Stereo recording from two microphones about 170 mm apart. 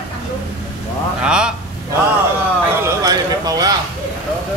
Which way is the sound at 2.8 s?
20° right (ahead or behind).